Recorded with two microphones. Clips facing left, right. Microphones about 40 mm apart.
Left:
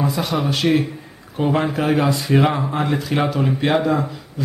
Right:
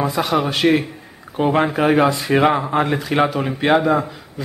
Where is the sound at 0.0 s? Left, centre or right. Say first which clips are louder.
Right 2 dB; centre.